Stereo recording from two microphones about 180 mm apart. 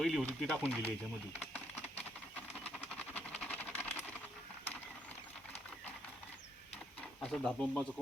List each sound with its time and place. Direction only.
0.0 s speech: centre (ahead or behind)
1.5 s a sound: 10° left (ahead or behind)
7.2 s speech: 5° left (ahead or behind)